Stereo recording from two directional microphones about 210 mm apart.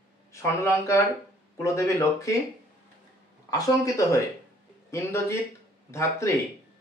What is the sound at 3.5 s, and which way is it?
Speech, 15° left (ahead or behind).